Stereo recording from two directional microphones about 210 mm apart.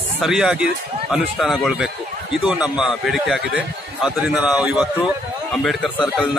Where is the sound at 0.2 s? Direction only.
Centre (ahead or behind).